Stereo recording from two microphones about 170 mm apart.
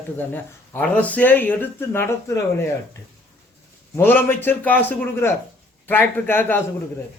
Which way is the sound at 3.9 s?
10° left (ahead or behind).